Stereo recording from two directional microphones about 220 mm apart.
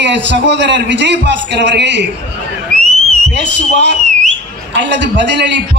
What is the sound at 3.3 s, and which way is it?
A man's voice, 55° right (ahead or behind).